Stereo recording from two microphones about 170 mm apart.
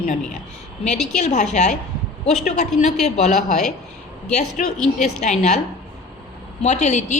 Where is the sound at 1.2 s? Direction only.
40° left (ahead or behind).